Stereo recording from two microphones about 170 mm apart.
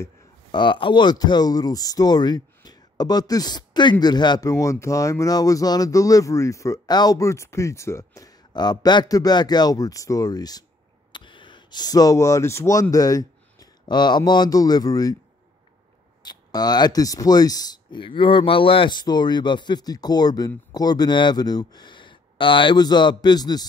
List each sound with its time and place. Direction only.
0.0 s speech: 25° left (ahead or behind)
16.2 s speech: 25° left (ahead or behind)